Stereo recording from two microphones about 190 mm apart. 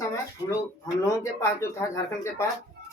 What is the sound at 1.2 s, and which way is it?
Speech, 15° left (ahead or behind).